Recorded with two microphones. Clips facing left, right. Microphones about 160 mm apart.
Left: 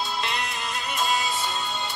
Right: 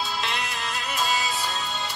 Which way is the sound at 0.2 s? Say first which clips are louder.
Even; centre (ahead or behind).